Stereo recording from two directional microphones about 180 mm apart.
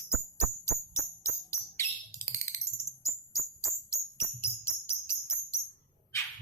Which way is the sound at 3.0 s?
15° left (ahead or behind).